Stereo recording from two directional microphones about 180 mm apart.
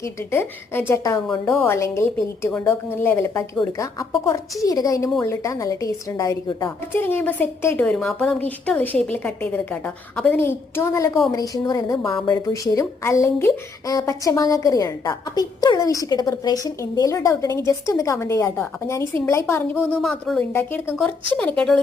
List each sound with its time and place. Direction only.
0.0 s a woman's voice: 15° left (ahead or behind)
20.5 s a woman's voice: 10° left (ahead or behind)